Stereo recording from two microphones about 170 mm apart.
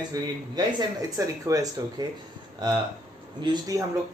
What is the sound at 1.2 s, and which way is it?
Speech, 20° right (ahead or behind).